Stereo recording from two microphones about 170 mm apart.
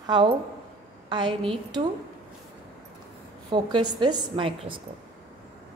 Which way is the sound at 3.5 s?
25° right (ahead or behind).